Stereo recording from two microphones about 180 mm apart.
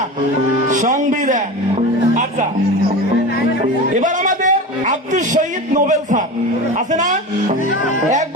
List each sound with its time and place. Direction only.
0.7 s a man's voice: 45° right (ahead or behind)
3.9 s a man's voice: 45° right (ahead or behind)